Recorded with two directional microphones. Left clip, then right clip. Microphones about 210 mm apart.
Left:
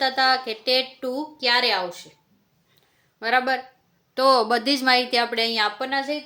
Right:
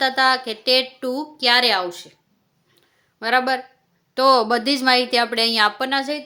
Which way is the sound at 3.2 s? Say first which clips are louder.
Right 2 dB; 20° right (ahead or behind).